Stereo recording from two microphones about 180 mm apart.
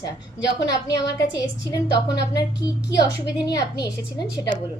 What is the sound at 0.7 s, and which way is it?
Speech, 20° left (ahead or behind).